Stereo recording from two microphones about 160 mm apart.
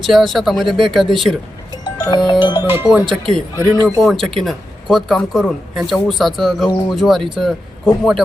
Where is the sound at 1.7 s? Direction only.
25° left (ahead or behind).